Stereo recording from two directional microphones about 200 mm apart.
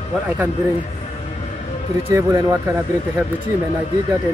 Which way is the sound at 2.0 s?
15° right (ahead or behind).